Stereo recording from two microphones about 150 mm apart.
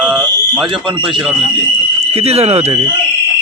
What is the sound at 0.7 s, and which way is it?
Speech, 30° right (ahead or behind).